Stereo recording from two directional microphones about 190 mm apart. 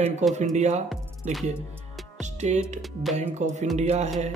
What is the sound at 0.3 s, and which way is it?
Speech, 35° right (ahead or behind).